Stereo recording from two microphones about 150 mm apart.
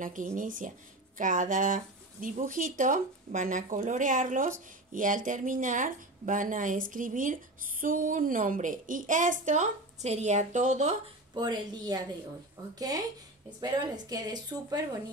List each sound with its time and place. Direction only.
0.0 s speech: 60° right (ahead or behind)
11.3 s speech: 30° right (ahead or behind)